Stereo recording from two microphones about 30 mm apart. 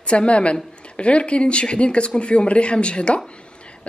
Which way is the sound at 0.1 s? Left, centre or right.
Left.